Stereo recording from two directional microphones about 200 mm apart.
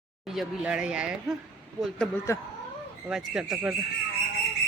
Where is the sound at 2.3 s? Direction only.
15° left (ahead or behind).